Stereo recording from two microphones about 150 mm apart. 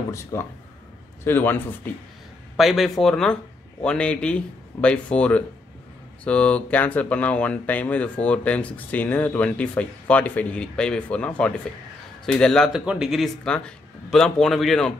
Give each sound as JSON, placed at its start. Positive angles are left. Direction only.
{"t": 0.1, "sound": "speech", "side_deg": 20}
{"t": 2.5, "sound": "a man's voice", "side_deg": 0}